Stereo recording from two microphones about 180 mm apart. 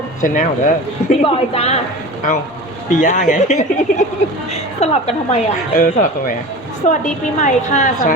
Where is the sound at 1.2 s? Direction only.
35° left (ahead or behind).